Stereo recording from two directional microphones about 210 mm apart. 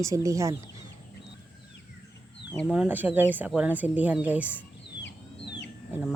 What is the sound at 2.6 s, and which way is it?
Speech, 5° right (ahead or behind).